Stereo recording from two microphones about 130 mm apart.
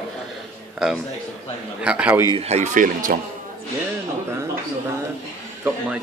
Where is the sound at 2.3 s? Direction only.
55° right (ahead or behind); by 3.2 s 90° right.